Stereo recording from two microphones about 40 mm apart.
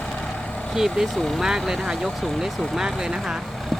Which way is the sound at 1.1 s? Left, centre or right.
Centre.